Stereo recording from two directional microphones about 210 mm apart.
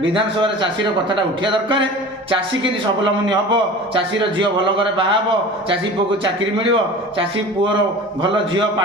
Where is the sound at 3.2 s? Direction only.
20° right (ahead or behind).